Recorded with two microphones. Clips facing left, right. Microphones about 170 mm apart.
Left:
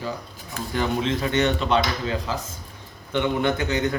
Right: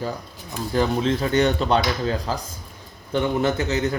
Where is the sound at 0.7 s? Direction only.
35° right (ahead or behind).